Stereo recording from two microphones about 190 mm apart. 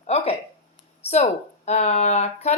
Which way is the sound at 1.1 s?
35° left (ahead or behind).